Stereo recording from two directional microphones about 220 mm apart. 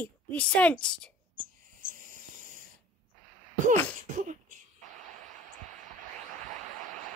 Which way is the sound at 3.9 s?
35° right (ahead or behind).